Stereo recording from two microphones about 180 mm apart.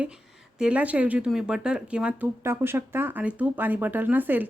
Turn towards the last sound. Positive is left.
turn(degrees=-10)  # may be behind; listen again after turning